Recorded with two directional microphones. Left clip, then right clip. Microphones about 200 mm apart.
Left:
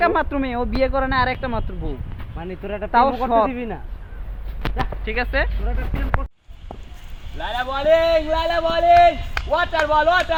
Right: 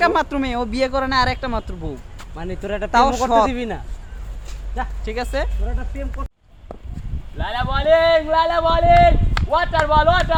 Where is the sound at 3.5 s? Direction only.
50° right (ahead or behind).